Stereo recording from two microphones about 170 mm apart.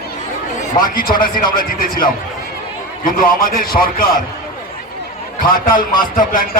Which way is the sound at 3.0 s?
55° left (ahead or behind).